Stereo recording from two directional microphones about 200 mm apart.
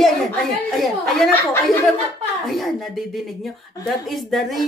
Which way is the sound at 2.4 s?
Centre (ahead or behind).